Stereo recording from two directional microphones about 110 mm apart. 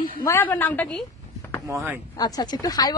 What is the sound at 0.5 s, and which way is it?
Speech, 15° left (ahead or behind).